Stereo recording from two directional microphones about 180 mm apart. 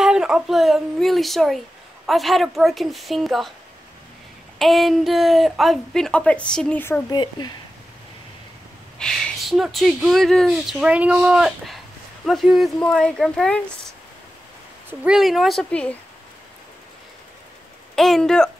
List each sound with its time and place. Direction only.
0.0 s speech: 5° right (ahead or behind)
4.6 s speech: centre (ahead or behind)
7.2 s speech: 25° left (ahead or behind)
8.9 s speech: 5° left (ahead or behind)
14.9 s speech: 5° right (ahead or behind)
17.9 s speech: centre (ahead or behind)